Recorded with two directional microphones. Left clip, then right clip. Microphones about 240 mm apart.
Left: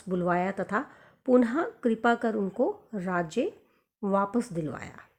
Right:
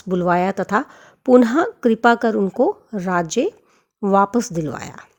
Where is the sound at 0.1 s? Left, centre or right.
Right.